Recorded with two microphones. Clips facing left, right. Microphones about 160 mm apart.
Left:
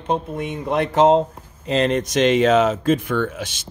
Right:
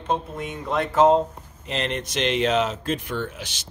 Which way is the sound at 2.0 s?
45° left (ahead or behind).